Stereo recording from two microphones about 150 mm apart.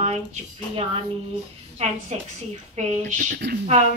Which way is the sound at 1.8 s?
45° right (ahead or behind).